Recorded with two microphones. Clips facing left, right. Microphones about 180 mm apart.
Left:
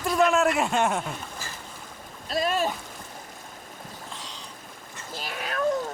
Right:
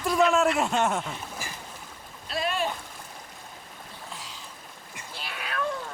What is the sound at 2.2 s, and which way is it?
Speech, 40° left (ahead or behind).